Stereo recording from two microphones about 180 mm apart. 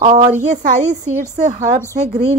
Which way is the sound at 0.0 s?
40° right (ahead or behind).